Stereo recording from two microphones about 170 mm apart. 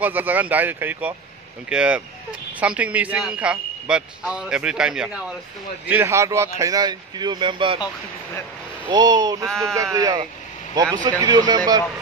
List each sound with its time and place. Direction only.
0.0 s a man's voice: 10° right (ahead or behind); by 7.8 s 30° right (ahead or behind)
8.8 s speech: 25° right (ahead or behind)